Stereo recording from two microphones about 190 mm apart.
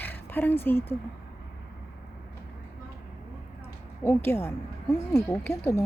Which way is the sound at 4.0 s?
10° left (ahead or behind).